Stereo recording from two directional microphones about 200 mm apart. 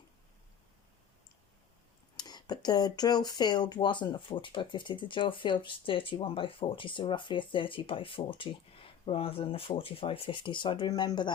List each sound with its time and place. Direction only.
2.1 s speech: 20° left (ahead or behind)